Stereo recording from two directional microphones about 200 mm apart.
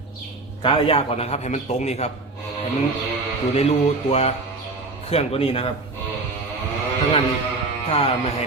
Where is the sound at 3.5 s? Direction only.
30° left (ahead or behind).